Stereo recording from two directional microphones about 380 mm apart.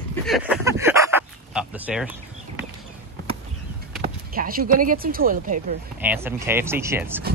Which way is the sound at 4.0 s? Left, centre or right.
Right.